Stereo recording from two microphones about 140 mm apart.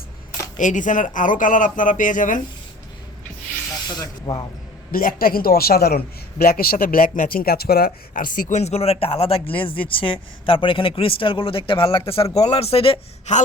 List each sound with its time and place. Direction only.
0.6 s speech: 65° left (ahead or behind)
3.8 s speech: 30° left (ahead or behind)
4.9 s a man's voice: 90° left; by 13.3 s 45° left (ahead or behind)